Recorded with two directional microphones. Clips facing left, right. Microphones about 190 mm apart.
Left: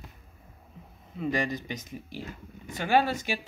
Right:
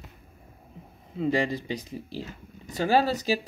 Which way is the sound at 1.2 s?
30° right (ahead or behind).